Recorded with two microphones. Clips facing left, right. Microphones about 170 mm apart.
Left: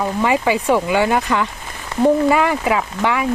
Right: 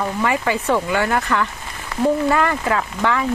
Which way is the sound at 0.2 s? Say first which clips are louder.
Left 4 dB; 15° left (ahead or behind).